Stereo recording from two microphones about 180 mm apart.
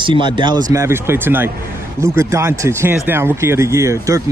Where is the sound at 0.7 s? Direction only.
15° right (ahead or behind).